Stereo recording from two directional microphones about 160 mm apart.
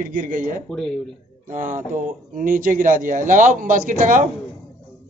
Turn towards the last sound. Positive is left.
turn(degrees=-55)  # may be behind; listen again after turning